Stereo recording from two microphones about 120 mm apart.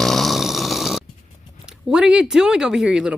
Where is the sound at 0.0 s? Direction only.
Centre (ahead or behind).